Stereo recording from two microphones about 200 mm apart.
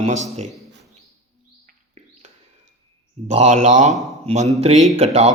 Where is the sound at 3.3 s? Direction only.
35° right (ahead or behind).